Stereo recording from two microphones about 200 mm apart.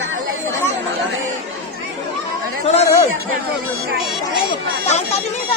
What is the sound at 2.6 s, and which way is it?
Chatter, 30° left (ahead or behind).